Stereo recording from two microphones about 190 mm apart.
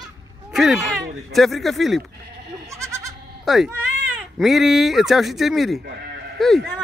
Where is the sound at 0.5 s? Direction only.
Centre (ahead or behind).